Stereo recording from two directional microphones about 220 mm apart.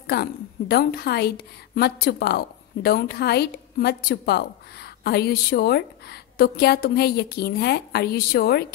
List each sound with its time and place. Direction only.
0.0 s a woman's voice: 45° left (ahead or behind)